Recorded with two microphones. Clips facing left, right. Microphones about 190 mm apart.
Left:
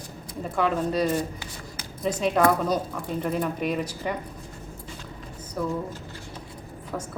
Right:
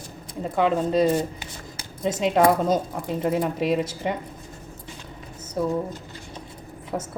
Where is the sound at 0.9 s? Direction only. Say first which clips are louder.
Right 4 dB; 25° right (ahead or behind).